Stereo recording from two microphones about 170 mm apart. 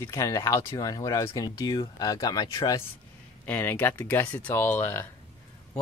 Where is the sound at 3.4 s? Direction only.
10° left (ahead or behind).